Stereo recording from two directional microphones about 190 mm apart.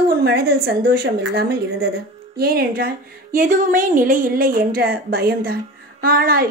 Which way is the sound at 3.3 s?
45° right (ahead or behind).